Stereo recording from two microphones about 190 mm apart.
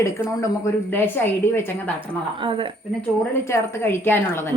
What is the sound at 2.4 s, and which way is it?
Speech, 25° right (ahead or behind).